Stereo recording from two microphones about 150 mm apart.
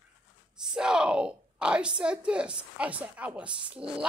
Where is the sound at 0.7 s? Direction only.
5° right (ahead or behind).